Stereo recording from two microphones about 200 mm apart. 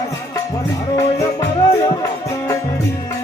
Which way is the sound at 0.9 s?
15° left (ahead or behind).